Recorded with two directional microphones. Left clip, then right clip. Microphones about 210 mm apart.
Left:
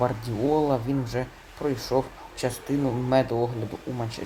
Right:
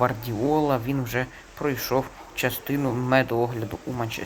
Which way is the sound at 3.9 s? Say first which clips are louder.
Right 5 dB; centre (ahead or behind).